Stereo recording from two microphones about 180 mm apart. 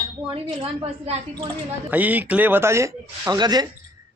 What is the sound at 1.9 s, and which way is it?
A man's voice, 10° right (ahead or behind).